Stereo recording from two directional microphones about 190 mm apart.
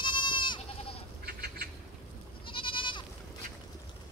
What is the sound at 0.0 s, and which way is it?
Goat, 25° left (ahead or behind).